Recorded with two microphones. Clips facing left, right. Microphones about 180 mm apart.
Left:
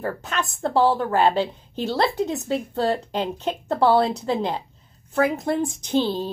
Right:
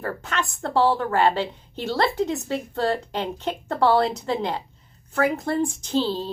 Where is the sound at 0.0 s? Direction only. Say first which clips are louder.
Left 1 dB; 10° left (ahead or behind).